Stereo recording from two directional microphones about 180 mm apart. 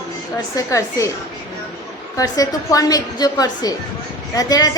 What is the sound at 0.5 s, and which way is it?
Speech, 15° left (ahead or behind).